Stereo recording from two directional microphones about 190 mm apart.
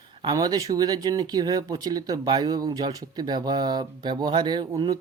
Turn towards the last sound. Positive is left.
turn(degrees=-20)  # may be behind; listen again after turning